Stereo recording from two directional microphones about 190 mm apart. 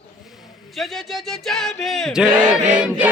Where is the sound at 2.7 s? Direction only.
5° right (ahead or behind).